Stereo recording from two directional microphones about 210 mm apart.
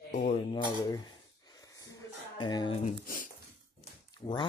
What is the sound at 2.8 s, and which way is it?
Speech, 40° left (ahead or behind).